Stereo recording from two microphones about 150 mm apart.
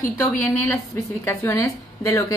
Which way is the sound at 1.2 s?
20° left (ahead or behind).